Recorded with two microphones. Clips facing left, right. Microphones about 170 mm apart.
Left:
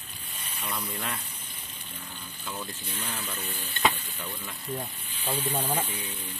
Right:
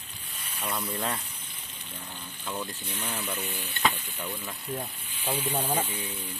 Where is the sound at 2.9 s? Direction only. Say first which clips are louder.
Right 2 dB; 10° right (ahead or behind).